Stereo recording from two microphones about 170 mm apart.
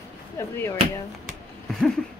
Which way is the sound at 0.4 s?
15° left (ahead or behind).